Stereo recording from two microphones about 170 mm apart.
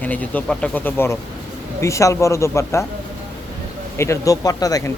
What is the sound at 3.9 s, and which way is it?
Speech, 15° left (ahead or behind).